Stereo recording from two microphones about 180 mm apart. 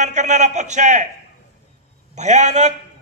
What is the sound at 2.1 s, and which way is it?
Speech, 40° right (ahead or behind).